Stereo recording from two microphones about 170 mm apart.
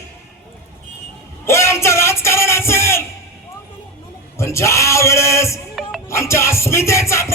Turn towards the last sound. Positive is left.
turn(degrees=15)  # may be behind; listen again after turning